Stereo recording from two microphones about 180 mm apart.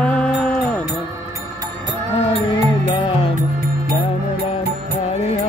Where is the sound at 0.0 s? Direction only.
5° left (ahead or behind).